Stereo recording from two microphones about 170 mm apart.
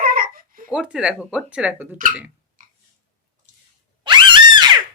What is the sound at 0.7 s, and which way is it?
Speech, 5° right (ahead or behind).